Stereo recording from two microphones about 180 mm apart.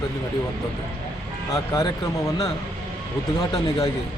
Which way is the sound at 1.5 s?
20° left (ahead or behind).